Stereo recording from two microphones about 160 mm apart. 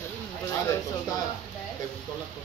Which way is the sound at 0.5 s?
20° left (ahead or behind).